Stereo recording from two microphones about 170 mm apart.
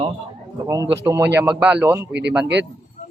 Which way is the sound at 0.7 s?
20° right (ahead or behind).